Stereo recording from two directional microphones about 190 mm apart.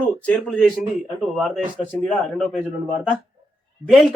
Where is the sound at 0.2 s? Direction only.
5° left (ahead or behind).